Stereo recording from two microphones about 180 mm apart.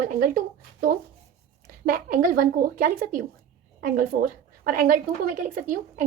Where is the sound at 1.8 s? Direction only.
50° right (ahead or behind).